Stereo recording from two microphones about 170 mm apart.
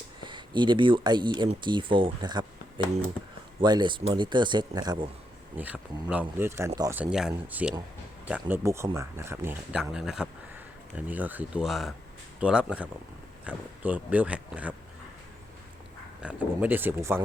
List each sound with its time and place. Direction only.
0.3 s speech: 25° right (ahead or behind)
5.5 s speech: 10° right (ahead or behind)
16.2 s speech: 10° right (ahead or behind)